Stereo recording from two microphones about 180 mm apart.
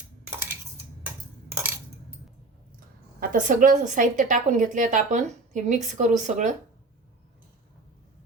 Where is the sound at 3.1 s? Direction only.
45° right (ahead or behind).